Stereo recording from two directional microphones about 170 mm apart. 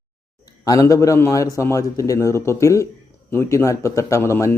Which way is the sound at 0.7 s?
20° left (ahead or behind).